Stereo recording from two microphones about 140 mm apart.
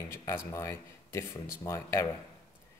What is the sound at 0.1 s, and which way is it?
Speech, 20° left (ahead or behind).